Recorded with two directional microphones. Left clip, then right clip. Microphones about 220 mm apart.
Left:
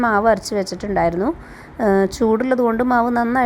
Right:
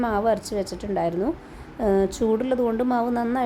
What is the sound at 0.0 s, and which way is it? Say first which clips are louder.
A woman's voice: left 7 dB; 15° left (ahead or behind).